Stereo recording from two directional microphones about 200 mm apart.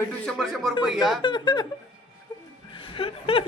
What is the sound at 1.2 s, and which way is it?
Speech, 20° left (ahead or behind).